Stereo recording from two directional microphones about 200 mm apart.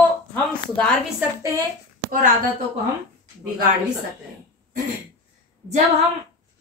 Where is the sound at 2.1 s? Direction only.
45° right (ahead or behind).